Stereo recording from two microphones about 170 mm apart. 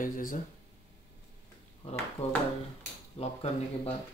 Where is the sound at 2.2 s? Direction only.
40° left (ahead or behind).